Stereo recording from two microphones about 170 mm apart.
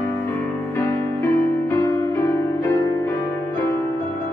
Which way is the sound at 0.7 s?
15° left (ahead or behind).